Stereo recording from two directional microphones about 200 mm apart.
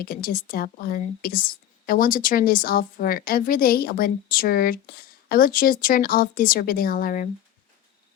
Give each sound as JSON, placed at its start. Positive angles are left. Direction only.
{"t": 0.0, "sound": "a woman's voice", "side_deg": 45}